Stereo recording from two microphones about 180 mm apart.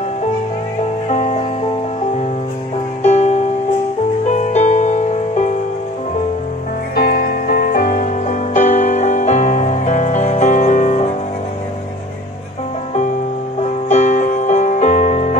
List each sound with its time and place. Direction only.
1.0 s music: 40° left (ahead or behind)
3.0 s music: 40° left (ahead or behind)
7.0 s music: 55° left (ahead or behind); by 11.1 s 40° left (ahead or behind)
13.8 s music: 40° left (ahead or behind)